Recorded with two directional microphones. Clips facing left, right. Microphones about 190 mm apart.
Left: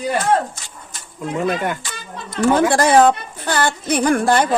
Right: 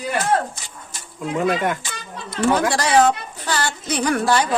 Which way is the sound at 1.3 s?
Centre (ahead or behind).